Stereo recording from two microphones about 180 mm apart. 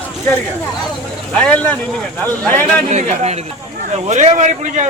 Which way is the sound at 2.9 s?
40° right (ahead or behind).